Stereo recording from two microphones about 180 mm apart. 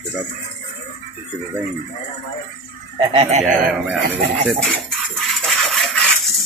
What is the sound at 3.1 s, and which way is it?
Speech, 35° right (ahead or behind).